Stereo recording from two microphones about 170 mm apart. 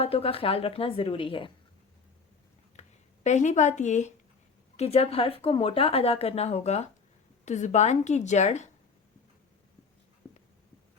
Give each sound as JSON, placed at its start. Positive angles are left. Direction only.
{"t": 0.0, "sound": "a woman's voice", "side_deg": 35}
{"t": 2.8, "sound": "a sound", "side_deg": 40}
{"t": 3.2, "sound": "a woman's voice", "side_deg": 45}